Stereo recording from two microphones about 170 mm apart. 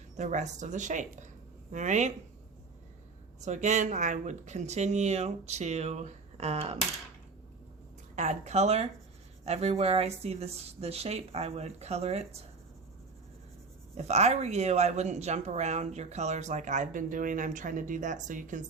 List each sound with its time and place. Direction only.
0.2 s speech: 45° right (ahead or behind)
3.4 s speech: 45° right (ahead or behind)
8.1 s speech: 45° right (ahead or behind)
13.9 s speech: 40° right (ahead or behind)